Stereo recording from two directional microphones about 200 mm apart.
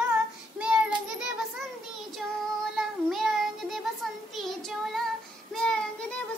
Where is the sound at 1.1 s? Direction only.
5° right (ahead or behind).